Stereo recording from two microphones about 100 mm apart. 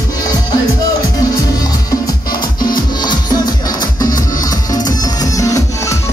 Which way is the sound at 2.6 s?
45° left (ahead or behind).